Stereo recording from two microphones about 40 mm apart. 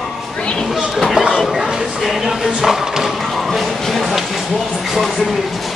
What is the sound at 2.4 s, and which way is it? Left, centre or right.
Speech, centre.